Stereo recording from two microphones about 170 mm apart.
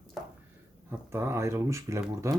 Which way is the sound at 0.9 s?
15° right (ahead or behind).